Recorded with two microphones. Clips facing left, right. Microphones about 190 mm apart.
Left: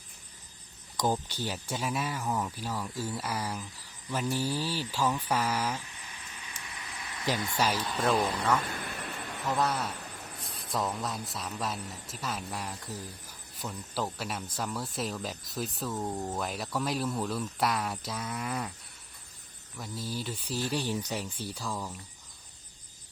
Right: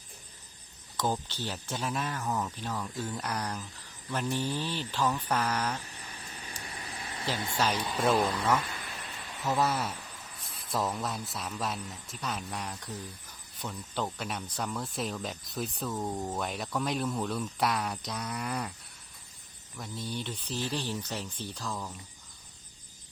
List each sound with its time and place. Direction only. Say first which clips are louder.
0.9 s speech: left 2 dB; 15° left (ahead or behind)
5.8 s vehicle: right 2 dB; 40° right (ahead or behind)
7.5 s speech: right 1 dB; 10° left (ahead or behind)
7.8 s speech: right 1 dB; 10° right (ahead or behind)
8.7 s vehicle: left 4 dB; 55° left (ahead or behind)
9.5 s speech: right 1 dB; 5° right (ahead or behind)
19.7 s speech: even; centre (ahead or behind)